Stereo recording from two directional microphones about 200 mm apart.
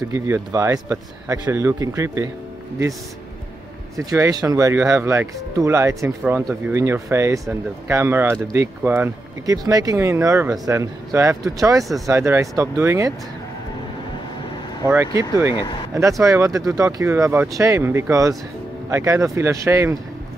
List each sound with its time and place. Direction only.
0.1 s speech: 15° right (ahead or behind)
3.9 s speech: 15° right (ahead or behind)
14.9 s speech: 15° right (ahead or behind)